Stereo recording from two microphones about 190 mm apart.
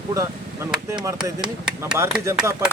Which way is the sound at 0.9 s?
20° right (ahead or behind).